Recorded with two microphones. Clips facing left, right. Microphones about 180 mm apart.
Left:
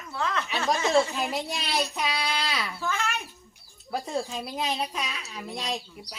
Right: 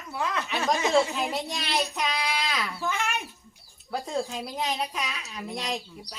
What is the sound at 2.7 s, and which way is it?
Speech, 15° right (ahead or behind).